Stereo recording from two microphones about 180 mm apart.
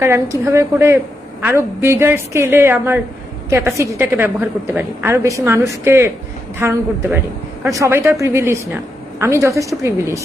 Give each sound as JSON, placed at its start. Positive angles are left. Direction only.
{"t": 0.0, "sound": "a woman's voice", "side_deg": -15}